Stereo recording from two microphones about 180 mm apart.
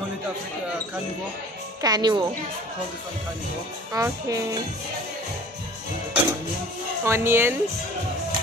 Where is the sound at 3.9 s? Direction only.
20° right (ahead or behind).